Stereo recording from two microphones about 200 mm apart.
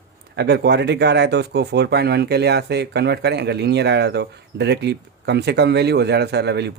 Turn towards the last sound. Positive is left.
turn(degrees=-55)  # may be behind; listen again after turning